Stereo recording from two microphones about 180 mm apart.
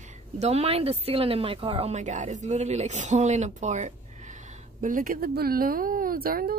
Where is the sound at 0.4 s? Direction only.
35° right (ahead or behind).